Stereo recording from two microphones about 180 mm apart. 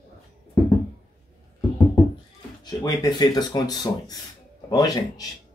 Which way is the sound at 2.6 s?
20° left (ahead or behind).